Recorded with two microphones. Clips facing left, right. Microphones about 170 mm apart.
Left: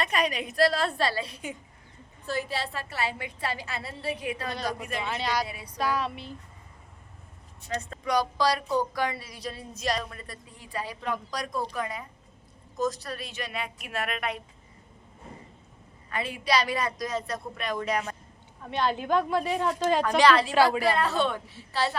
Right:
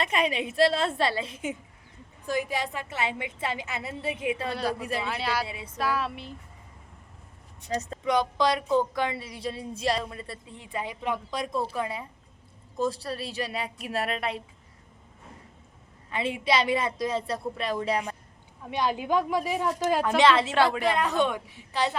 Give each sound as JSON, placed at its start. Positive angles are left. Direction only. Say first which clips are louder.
{"t": 0.0, "sound": "a woman's voice", "louder": "right 1 dB", "side_deg": -25}
{"t": 4.5, "sound": "a woman's voice", "louder": "right 3 dB", "side_deg": -5}
{"t": 4.8, "sound": "speech", "louder": "right 3 dB", "side_deg": -35}
{"t": 5.0, "sound": "a sound", "louder": "left 3 dB", "side_deg": -5}
{"t": 5.5, "sound": "a woman's voice", "louder": "right 2 dB", "side_deg": -25}
{"t": 5.7, "sound": "a sound", "louder": "even", "side_deg": -5}
{"t": 8.0, "sound": "a woman's voice", "louder": "right 1 dB", "side_deg": -20}
{"t": 16.1, "sound": "a woman's voice", "louder": "right 1 dB", "side_deg": -25}
{"t": 18.6, "sound": "a woman's voice", "louder": "even", "side_deg": -10}
{"t": 20.1, "sound": "a woman's voice", "louder": "right 1 dB", "side_deg": -25}